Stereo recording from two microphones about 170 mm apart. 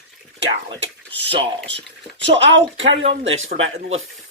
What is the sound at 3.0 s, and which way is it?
Speech, 35° right (ahead or behind).